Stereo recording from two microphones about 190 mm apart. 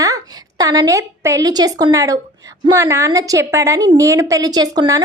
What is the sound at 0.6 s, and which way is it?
A woman's voice, 20° right (ahead or behind).